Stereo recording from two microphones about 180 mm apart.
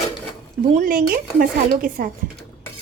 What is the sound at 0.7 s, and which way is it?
Speech, 50° right (ahead or behind).